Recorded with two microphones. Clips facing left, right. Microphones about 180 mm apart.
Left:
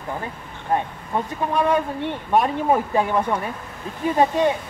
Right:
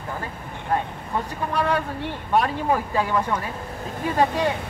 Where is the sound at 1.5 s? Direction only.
20° left (ahead or behind).